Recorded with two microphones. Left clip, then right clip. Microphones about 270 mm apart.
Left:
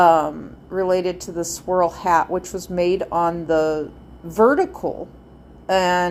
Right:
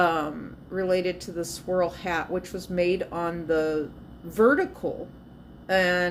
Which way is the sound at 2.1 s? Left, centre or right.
Centre.